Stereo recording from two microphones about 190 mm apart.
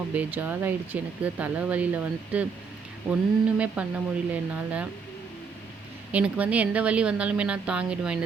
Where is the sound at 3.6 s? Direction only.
5° right (ahead or behind).